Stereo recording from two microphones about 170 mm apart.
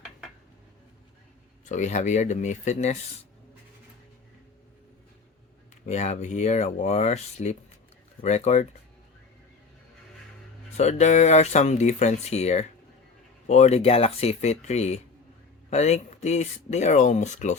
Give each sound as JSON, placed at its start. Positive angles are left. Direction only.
{"t": 1.6, "sound": "speech", "side_deg": 45}
{"t": 5.8, "sound": "speech", "side_deg": 40}
{"t": 10.8, "sound": "speech", "side_deg": 40}